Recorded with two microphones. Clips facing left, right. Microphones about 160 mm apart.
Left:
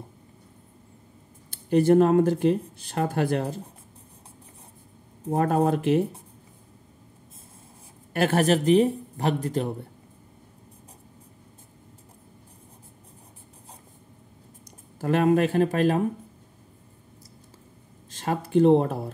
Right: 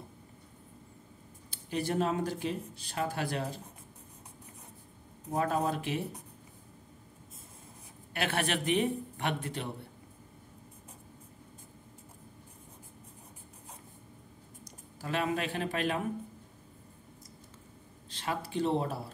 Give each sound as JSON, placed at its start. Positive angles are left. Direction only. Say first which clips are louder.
{"t": 1.5, "sound": "speech", "louder": "left 14 dB", "side_deg": 50}
{"t": 5.3, "sound": "speech", "louder": "left 8 dB", "side_deg": 55}
{"t": 8.1, "sound": "speech", "louder": "left 11 dB", "side_deg": 45}
{"t": 15.0, "sound": "speech", "louder": "left 12 dB", "side_deg": 50}
{"t": 18.1, "sound": "speech", "louder": "left 11 dB", "side_deg": 45}